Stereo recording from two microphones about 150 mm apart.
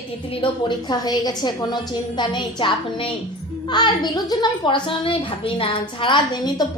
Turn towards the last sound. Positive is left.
turn(degrees=30)  # may be behind; listen again after turning